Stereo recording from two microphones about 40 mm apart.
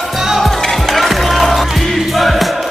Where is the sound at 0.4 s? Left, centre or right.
Centre.